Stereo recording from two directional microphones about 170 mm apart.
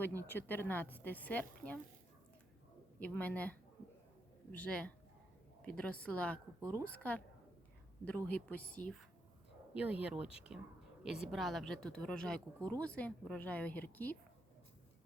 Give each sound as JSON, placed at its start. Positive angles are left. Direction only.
{"t": 0.2, "sound": "a woman's voice", "side_deg": 10}
{"t": 3.0, "sound": "a woman's voice", "side_deg": 10}
{"t": 6.6, "sound": "a woman's voice", "side_deg": -20}
{"t": 6.8, "sound": "a woman's voice", "side_deg": 10}
{"t": 9.7, "sound": "a woman's voice", "side_deg": -5}